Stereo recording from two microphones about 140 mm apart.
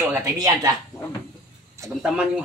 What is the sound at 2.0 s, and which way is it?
Speech, 5° right (ahead or behind).